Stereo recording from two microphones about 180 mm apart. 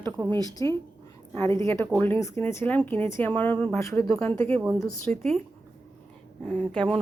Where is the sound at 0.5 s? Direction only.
20° left (ahead or behind).